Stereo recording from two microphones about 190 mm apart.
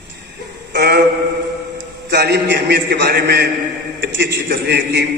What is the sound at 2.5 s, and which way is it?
A man's voice, 65° right (ahead or behind).